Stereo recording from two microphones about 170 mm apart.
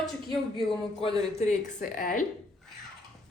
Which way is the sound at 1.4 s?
45° left (ahead or behind).